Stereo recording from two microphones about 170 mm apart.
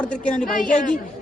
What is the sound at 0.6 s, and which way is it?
Speech, 50° left (ahead or behind).